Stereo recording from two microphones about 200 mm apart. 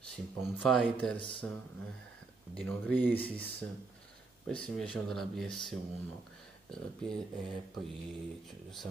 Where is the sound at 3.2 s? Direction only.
25° left (ahead or behind).